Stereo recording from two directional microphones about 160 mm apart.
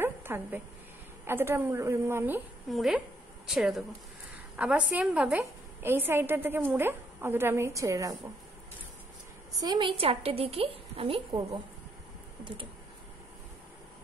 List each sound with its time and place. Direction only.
0.0 s a sound: 15° right (ahead or behind)
1.2 s a woman's voice: 15° right (ahead or behind)
2.7 s a woman's voice: centre (ahead or behind); by 8.2 s 20° right (ahead or behind)
9.6 s a woman's voice: 30° right (ahead or behind)